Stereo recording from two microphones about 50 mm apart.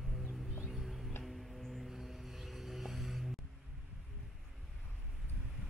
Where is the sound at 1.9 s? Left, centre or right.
Centre.